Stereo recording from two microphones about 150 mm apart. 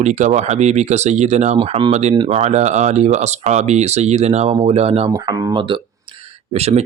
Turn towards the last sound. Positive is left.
turn(degrees=-45)  # may be behind; listen again after turning